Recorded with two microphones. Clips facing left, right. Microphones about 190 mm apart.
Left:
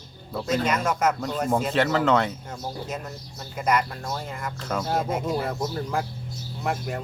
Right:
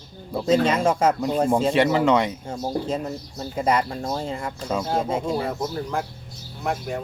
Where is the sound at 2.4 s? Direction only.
30° right (ahead or behind).